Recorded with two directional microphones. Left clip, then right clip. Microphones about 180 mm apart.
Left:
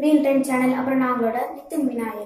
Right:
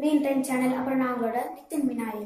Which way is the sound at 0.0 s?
15° right (ahead or behind).